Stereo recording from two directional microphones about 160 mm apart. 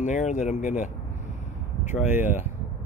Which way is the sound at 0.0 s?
50° left (ahead or behind).